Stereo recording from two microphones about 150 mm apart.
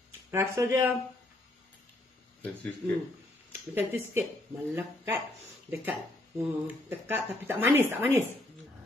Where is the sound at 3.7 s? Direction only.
15° right (ahead or behind).